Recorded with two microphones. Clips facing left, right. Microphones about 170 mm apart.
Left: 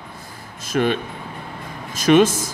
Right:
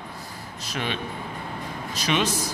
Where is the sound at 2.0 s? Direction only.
50° left (ahead or behind).